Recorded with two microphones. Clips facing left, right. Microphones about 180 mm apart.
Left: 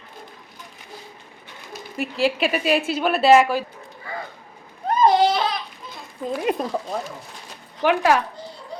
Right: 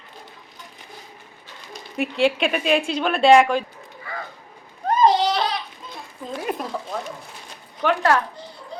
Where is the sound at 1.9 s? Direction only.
Centre (ahead or behind).